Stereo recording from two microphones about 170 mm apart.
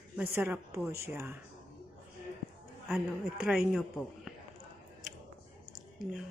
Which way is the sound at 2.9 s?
5° right (ahead or behind).